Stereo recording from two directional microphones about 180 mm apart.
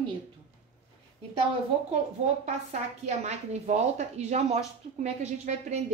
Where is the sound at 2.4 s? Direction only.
40° right (ahead or behind).